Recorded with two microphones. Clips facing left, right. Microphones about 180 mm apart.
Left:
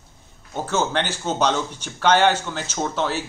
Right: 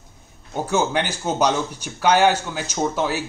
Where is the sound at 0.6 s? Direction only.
10° right (ahead or behind).